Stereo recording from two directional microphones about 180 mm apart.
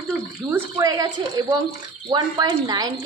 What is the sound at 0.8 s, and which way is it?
Speech, 20° right (ahead or behind).